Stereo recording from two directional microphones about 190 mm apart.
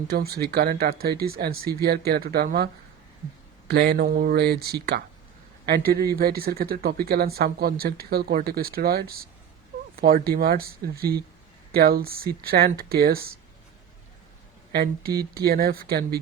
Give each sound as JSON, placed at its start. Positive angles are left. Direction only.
{"t": 0.1, "sound": "speech", "side_deg": -55}
{"t": 3.7, "sound": "speech", "side_deg": -60}
{"t": 14.7, "sound": "speech", "side_deg": -55}